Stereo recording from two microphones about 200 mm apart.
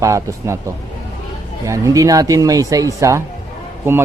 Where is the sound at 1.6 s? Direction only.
15° right (ahead or behind).